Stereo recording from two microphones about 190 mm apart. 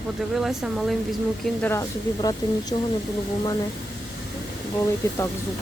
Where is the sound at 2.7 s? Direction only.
30° left (ahead or behind).